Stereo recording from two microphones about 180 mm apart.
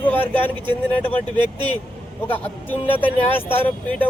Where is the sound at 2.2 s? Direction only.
10° left (ahead or behind).